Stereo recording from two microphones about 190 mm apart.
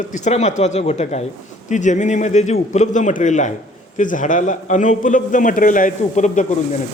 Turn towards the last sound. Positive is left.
turn(degrees=40)  # may be behind; listen again after turning